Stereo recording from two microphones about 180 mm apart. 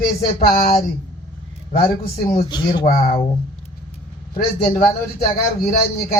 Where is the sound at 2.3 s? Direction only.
25° left (ahead or behind).